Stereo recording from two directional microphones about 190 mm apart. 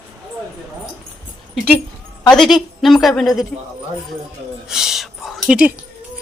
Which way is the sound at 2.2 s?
Centre (ahead or behind).